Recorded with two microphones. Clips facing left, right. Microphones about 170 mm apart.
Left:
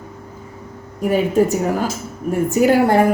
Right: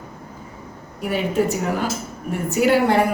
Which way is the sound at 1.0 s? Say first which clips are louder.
Left 5 dB; 45° left (ahead or behind).